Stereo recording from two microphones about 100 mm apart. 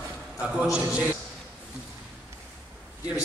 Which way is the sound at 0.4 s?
10° right (ahead or behind).